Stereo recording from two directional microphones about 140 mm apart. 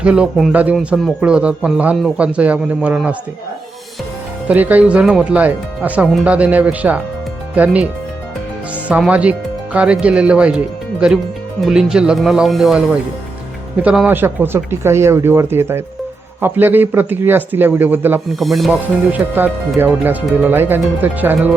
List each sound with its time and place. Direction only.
0.0 s speech: 5° right (ahead or behind)
4.4 s speech: 10° right (ahead or behind)
11.6 s speech: 5° right (ahead or behind)
13.8 s speech: 10° right (ahead or behind)
18.3 s speech: centre (ahead or behind)
18.7 s speech: 10° right (ahead or behind)